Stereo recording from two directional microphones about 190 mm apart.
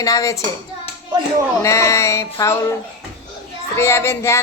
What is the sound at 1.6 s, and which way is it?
Speech, 15° left (ahead or behind).